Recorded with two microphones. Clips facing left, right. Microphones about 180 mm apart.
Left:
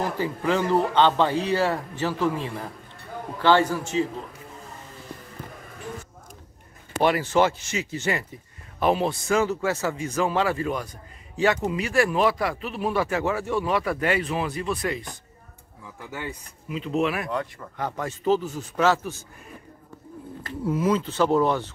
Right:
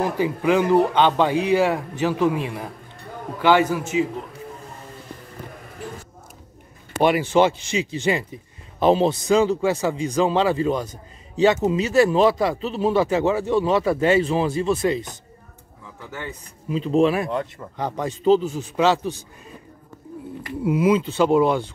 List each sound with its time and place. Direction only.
0.0 s speech: 15° right (ahead or behind)
7.0 s speech: 20° right (ahead or behind)
16.1 s a man's voice: 10° left (ahead or behind)
16.6 s speech: 30° right (ahead or behind)
20.4 s speech: 15° right (ahead or behind)